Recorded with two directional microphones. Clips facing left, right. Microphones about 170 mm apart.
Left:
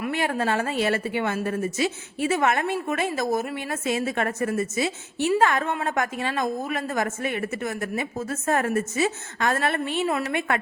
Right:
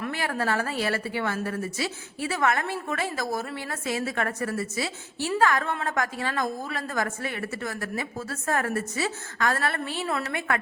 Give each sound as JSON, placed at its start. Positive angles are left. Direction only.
{"t": 0.0, "sound": "a woman's voice", "side_deg": 20}